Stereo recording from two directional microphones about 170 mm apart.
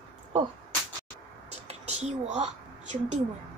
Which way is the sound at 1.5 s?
40° right (ahead or behind).